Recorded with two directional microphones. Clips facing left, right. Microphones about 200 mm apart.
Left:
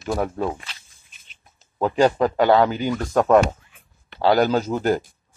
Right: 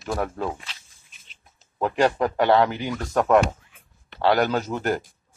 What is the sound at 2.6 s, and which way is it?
Speech, 25° left (ahead or behind).